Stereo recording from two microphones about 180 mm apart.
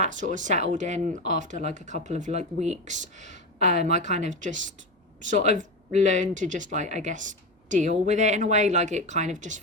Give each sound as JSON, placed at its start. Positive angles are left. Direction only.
{"t": 0.0, "sound": "speech", "side_deg": -45}